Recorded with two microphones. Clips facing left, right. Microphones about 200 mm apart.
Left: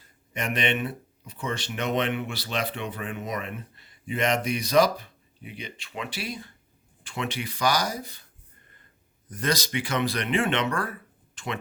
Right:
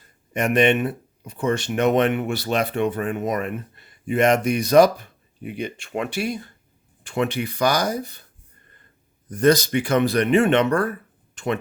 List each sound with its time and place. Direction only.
0.3 s speech: 45° right (ahead or behind)
9.4 s speech: 55° right (ahead or behind)